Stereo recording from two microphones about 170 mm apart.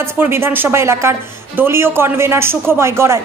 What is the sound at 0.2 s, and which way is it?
Speech, 15° right (ahead or behind).